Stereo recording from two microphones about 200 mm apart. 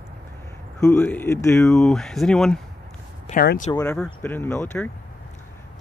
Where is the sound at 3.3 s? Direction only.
45° left (ahead or behind).